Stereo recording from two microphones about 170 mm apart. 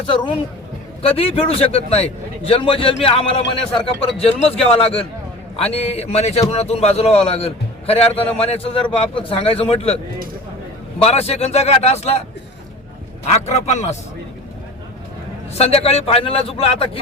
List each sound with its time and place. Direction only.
0.1 s a man's voice: 30° left (ahead or behind)
11.0 s a man's voice: 35° left (ahead or behind)
13.2 s a man's voice: 40° left (ahead or behind)
15.5 s a man's voice: 35° left (ahead or behind)